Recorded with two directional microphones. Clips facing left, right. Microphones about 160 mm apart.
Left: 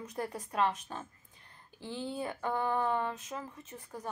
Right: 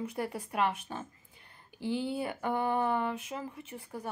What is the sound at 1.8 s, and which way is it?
Speech, 10° right (ahead or behind).